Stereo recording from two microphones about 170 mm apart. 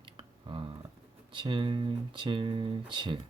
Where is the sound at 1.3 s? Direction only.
30° right (ahead or behind).